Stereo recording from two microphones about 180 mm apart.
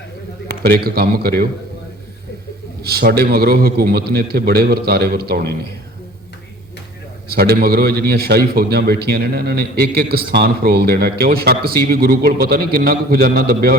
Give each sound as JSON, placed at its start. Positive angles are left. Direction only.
{"t": 0.6, "sound": "a man's voice", "side_deg": -60}
{"t": 2.8, "sound": "a man's voice", "side_deg": -60}
{"t": 7.3, "sound": "a man's voice", "side_deg": -60}